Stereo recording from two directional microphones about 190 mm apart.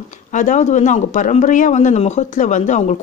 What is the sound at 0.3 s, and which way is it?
Speech, 40° left (ahead or behind).